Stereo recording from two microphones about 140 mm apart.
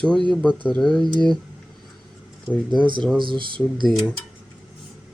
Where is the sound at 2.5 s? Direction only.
10° left (ahead or behind).